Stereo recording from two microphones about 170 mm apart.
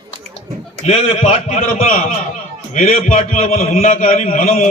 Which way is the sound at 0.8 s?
40° left (ahead or behind).